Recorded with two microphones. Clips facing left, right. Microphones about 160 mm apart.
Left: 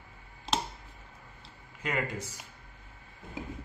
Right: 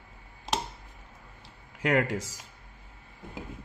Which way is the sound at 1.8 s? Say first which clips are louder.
Right 7 dB; 75° right (ahead or behind).